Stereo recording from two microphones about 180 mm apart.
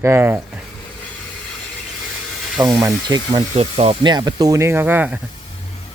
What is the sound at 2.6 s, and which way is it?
Speech, 20° right (ahead or behind).